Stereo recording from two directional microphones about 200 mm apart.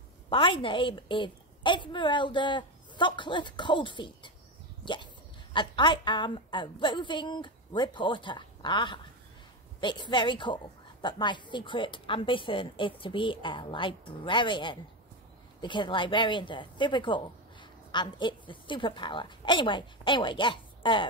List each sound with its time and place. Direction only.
0.3 s a woman's voice: 25° left (ahead or behind)